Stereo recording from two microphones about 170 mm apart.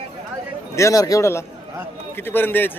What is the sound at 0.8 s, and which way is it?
Speech, 20° left (ahead or behind).